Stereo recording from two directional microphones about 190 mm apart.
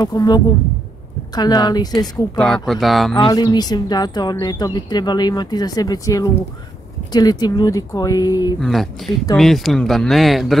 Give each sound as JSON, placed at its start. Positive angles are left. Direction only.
{"t": 0.0, "sound": "speech", "side_deg": 20}
{"t": 2.3, "sound": "speech", "side_deg": 0}
{"t": 3.2, "sound": "speech", "side_deg": 20}
{"t": 8.5, "sound": "speech", "side_deg": 0}